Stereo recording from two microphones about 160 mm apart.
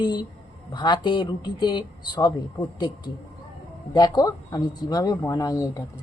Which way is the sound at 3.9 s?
25° left (ahead or behind).